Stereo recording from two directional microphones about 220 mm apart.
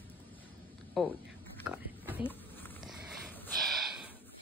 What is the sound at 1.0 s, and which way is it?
Speech, centre (ahead or behind).